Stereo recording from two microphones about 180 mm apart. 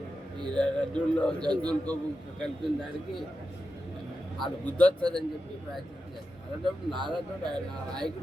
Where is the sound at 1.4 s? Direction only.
20° right (ahead or behind).